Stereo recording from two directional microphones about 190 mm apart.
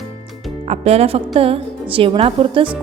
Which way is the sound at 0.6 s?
35° right (ahead or behind).